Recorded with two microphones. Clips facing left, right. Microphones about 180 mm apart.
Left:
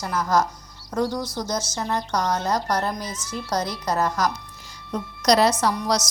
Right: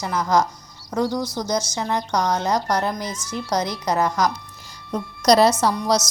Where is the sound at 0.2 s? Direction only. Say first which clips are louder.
Right 2 dB; 15° right (ahead or behind).